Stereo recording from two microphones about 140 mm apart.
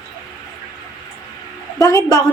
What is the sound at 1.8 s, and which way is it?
Speech, 25° left (ahead or behind).